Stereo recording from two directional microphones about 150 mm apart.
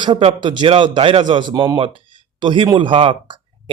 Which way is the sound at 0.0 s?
35° right (ahead or behind).